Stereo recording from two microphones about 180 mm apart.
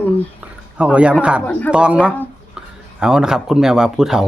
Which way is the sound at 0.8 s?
5° right (ahead or behind).